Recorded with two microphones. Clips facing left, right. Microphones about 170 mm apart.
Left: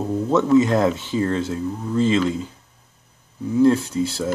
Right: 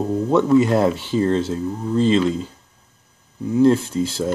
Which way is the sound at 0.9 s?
20° left (ahead or behind).